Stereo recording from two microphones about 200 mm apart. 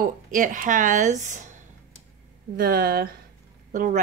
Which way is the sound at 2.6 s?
50° right (ahead or behind).